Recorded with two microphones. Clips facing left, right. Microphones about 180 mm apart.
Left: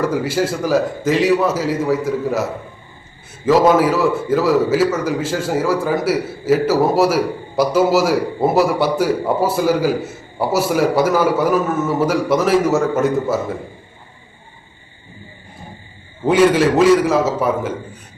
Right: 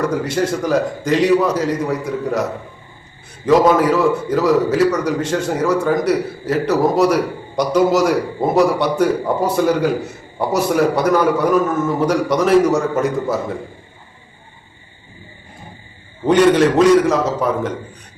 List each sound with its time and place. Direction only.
0.2 s a man's voice: 5° left (ahead or behind)
3.4 s a man's voice: 5° left (ahead or behind)
16.2 s a man's voice: 5° left (ahead or behind)